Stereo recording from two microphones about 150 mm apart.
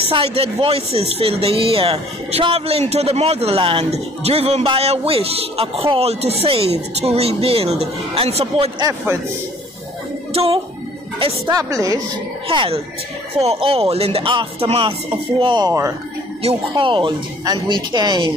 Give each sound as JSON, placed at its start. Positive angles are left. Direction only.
{"t": 0.1, "sound": "speech", "side_deg": -40}
{"t": 8.8, "sound": "a man's voice", "side_deg": -15}
{"t": 10.3, "sound": "speech", "side_deg": -40}
{"t": 11.5, "sound": "speech", "side_deg": -25}
{"t": 12.4, "sound": "speech", "side_deg": -40}